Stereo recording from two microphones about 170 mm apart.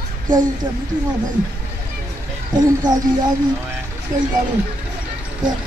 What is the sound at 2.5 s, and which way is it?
Speech, 25° right (ahead or behind).